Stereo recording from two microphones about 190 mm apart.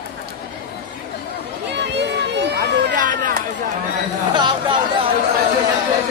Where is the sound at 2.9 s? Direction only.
45° right (ahead or behind).